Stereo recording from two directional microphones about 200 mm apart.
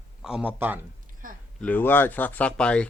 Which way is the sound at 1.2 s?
45° right (ahead or behind).